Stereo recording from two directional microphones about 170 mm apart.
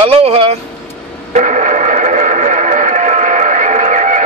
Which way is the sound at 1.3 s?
45° right (ahead or behind).